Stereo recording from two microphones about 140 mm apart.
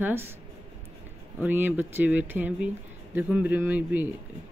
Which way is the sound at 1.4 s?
15° right (ahead or behind).